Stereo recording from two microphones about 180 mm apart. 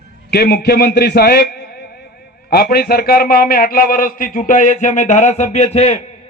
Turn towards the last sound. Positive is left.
turn(degrees=35)  # may be behind; listen again after turning